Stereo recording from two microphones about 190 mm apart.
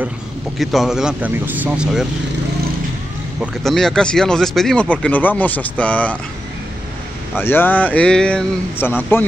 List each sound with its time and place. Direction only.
0.6 s speech: centre (ahead or behind)
3.3 s speech: centre (ahead or behind)
7.3 s speech: 10° left (ahead or behind)